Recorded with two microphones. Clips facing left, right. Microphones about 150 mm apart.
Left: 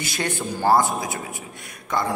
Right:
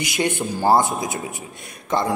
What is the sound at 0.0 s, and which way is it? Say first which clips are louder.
Speech: right 4 dB; 20° right (ahead or behind).